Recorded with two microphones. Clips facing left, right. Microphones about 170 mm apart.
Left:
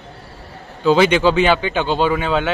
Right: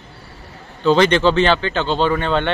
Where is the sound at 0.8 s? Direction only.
10° left (ahead or behind).